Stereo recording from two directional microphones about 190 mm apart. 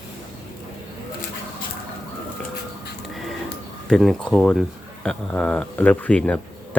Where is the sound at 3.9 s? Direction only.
Centre (ahead or behind).